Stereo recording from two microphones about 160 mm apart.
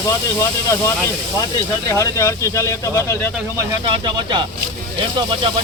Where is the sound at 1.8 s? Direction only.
20° left (ahead or behind).